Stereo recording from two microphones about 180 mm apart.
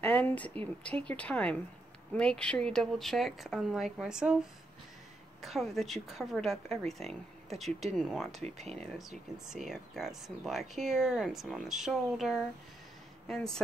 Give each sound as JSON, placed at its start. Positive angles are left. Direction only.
{"t": 0.0, "sound": "speech", "side_deg": 10}
{"t": 8.4, "sound": "speech", "side_deg": -35}
{"t": 9.5, "sound": "speech", "side_deg": 0}